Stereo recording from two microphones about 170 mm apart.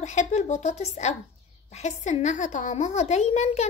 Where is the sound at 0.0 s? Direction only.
45° left (ahead or behind).